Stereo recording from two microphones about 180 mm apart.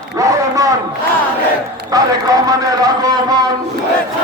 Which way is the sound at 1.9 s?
20° right (ahead or behind).